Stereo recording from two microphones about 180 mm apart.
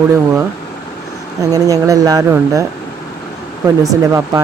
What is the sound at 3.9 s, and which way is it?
Speech, 15° right (ahead or behind).